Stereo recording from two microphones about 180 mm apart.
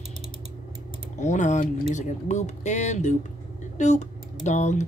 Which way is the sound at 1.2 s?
40° left (ahead or behind).